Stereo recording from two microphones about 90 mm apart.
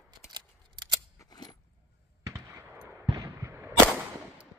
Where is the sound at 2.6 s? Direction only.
20° right (ahead or behind).